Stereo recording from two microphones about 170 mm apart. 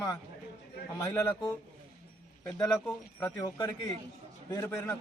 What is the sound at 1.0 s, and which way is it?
Speech, 15° left (ahead or behind).